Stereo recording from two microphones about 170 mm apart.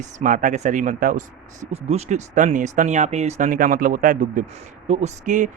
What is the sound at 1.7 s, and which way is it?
Speech, 40° right (ahead or behind).